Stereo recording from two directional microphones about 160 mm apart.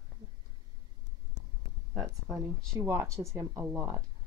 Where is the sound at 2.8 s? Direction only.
20° right (ahead or behind).